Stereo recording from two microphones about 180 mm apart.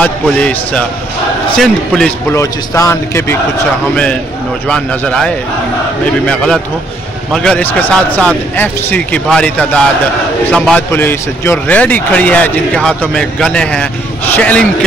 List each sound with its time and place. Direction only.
0.0 s a man's voice: 5° left (ahead or behind)
2.3 s a man's voice: 15° left (ahead or behind)